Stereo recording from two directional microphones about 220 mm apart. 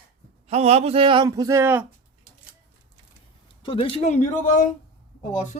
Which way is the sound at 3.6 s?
25° left (ahead or behind).